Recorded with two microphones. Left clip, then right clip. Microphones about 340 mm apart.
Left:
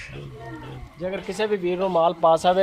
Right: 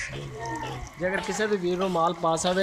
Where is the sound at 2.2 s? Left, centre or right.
Left.